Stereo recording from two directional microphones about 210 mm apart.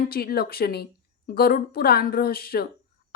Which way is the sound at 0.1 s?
45° left (ahead or behind).